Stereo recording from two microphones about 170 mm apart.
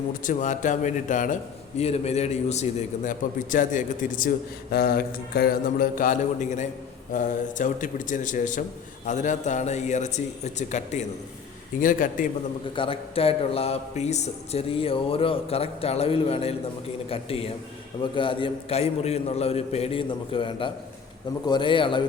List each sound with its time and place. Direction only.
0.2 s a man's voice: 50° left (ahead or behind)
4.7 s a man's voice: 65° left (ahead or behind)
12.7 s a man's voice: 30° left (ahead or behind)